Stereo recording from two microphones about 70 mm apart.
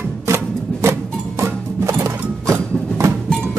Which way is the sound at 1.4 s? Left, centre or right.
Right.